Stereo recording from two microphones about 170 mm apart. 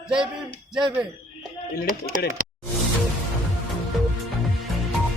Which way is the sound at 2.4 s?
55° right (ahead or behind).